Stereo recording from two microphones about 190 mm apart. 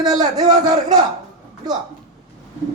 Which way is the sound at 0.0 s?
20° right (ahead or behind).